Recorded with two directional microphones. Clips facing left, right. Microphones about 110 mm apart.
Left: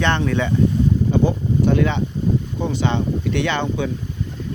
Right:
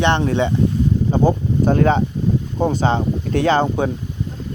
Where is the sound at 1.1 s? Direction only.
45° right (ahead or behind).